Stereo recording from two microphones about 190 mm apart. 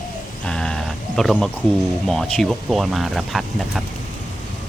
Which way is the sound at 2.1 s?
Centre (ahead or behind).